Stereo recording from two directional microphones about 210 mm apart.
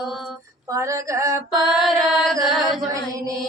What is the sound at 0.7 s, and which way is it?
Female singing, 15° right (ahead or behind).